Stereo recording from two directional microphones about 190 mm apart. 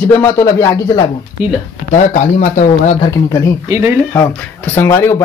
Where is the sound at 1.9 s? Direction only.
40° left (ahead or behind).